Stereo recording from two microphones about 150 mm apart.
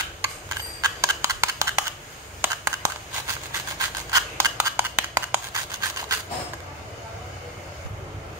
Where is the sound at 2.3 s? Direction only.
20° right (ahead or behind).